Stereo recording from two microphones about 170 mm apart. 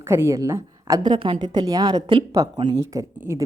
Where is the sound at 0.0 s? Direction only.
15° right (ahead or behind).